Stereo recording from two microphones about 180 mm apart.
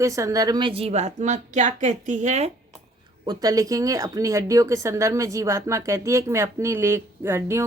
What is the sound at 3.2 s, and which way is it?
A woman's voice, 20° right (ahead or behind).